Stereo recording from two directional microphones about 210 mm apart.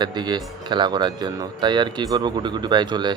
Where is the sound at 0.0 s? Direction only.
20° right (ahead or behind).